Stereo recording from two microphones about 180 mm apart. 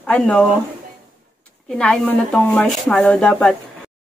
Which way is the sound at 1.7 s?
5° left (ahead or behind).